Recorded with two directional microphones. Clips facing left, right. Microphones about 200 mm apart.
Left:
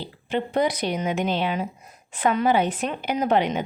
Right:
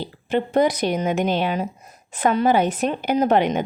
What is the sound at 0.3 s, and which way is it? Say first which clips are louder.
Speech: right 4 dB; 45° right (ahead or behind).